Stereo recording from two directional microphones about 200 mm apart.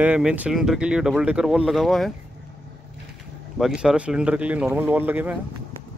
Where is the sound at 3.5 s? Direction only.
5° right (ahead or behind).